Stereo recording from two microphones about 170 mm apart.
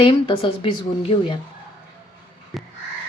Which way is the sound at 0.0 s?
30° left (ahead or behind).